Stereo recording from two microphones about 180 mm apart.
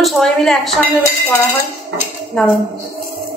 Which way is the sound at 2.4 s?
5° left (ahead or behind).